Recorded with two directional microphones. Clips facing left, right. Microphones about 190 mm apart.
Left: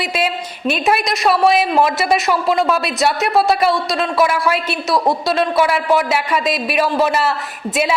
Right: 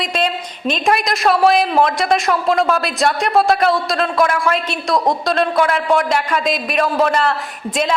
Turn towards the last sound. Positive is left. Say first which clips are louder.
# even
turn(degrees=5)  # may be behind; listen again after turning